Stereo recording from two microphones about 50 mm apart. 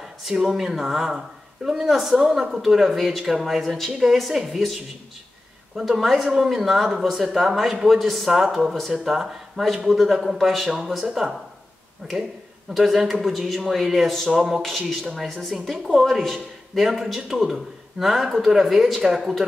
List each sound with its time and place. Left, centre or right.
0.3 s a woman's voice: centre
5.8 s a woman's voice: centre